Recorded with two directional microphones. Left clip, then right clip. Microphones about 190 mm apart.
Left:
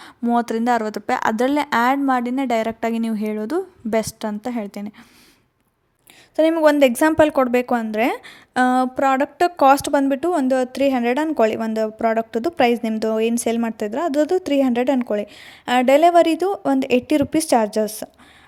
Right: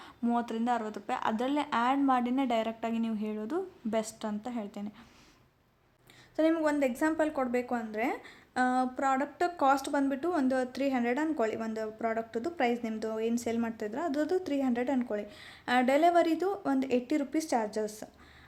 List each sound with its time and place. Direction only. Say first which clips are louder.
0.0 s a woman's voice: left 12 dB; 35° left (ahead or behind)
6.3 s a woman's voice: left 13 dB; 40° left (ahead or behind)